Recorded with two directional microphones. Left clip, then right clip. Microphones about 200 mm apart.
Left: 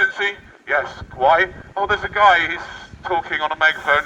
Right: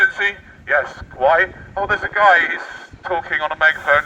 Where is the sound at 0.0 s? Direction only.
Centre (ahead or behind).